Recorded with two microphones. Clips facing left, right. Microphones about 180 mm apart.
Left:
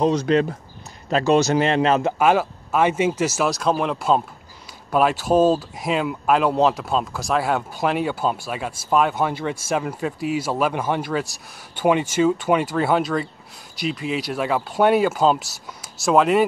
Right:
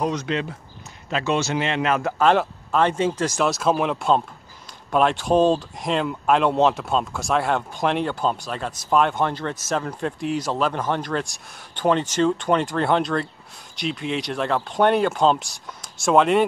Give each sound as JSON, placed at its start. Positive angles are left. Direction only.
{"t": 0.0, "sound": "speech", "side_deg": 30}
{"t": 2.1, "sound": "speech", "side_deg": 10}